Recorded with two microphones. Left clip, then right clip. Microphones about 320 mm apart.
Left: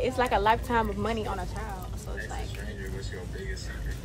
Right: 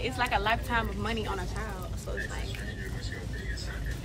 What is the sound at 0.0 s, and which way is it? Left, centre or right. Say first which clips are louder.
Speech: left 4 dB; left.